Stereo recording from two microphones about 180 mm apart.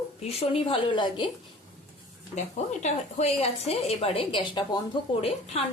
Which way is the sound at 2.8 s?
40° left (ahead or behind).